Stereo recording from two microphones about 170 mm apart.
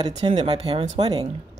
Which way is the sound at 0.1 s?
40° right (ahead or behind).